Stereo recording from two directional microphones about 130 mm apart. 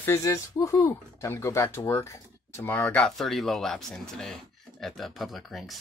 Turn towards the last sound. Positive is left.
turn(degrees=0)  # may be behind; listen again after turning